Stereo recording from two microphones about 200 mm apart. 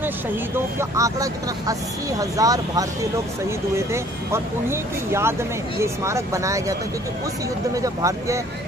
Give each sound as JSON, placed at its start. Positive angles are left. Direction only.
{"t": 0.7, "sound": "speech", "side_deg": -15}
{"t": 7.7, "sound": "speech", "side_deg": -15}